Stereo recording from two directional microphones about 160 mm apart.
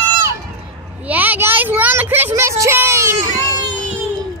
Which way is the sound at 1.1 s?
10° right (ahead or behind).